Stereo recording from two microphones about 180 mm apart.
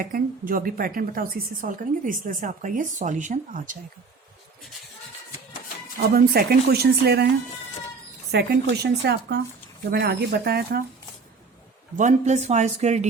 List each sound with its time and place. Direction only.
0.0 s a woman's voice: 50° right (ahead or behind)
6.0 s speech: 60° right (ahead or behind)
8.3 s speech: 65° right (ahead or behind)
11.9 s speech: 40° right (ahead or behind)